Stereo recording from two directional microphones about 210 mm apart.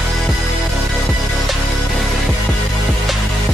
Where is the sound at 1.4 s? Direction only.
Centre (ahead or behind).